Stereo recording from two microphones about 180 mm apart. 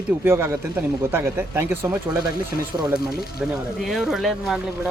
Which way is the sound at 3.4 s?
5° right (ahead or behind).